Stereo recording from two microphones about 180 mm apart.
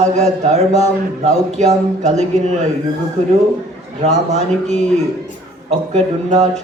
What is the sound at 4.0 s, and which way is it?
A man's voice, 40° right (ahead or behind).